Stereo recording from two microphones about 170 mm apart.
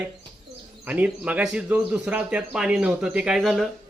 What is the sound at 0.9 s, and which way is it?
Speech, 10° right (ahead or behind).